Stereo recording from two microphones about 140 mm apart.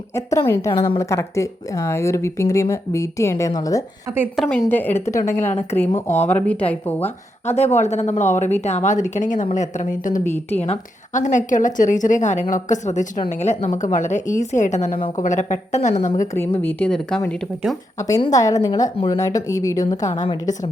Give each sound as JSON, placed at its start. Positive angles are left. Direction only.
{"t": 0.1, "sound": "speech", "side_deg": 20}
{"t": 0.7, "sound": "a woman's voice", "side_deg": 35}
{"t": 0.9, "sound": "speech", "side_deg": 20}
{"t": 4.4, "sound": "speech", "side_deg": 5}
{"t": 7.8, "sound": "a woman's voice", "side_deg": 55}
{"t": 10.5, "sound": "a woman's voice", "side_deg": 50}
{"t": 16.6, "sound": "speech", "side_deg": 10}
{"t": 18.2, "sound": "a woman's voice", "side_deg": 25}